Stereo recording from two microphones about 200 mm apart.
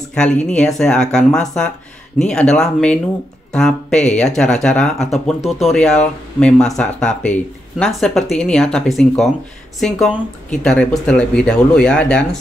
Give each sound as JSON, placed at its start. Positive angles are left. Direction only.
{"t": 0.1, "sound": "speech", "side_deg": 5}